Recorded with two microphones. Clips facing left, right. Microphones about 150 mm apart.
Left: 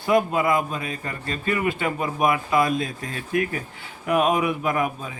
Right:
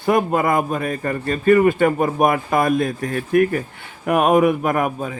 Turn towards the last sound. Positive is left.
turn(degrees=-50)  # may be behind; listen again after turning